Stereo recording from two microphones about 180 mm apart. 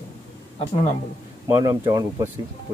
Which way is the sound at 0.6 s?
30° left (ahead or behind).